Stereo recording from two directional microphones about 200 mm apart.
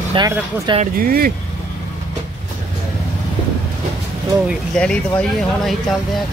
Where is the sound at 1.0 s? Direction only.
50° right (ahead or behind).